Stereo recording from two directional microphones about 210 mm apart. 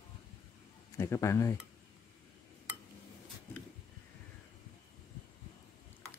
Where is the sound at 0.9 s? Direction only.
15° left (ahead or behind).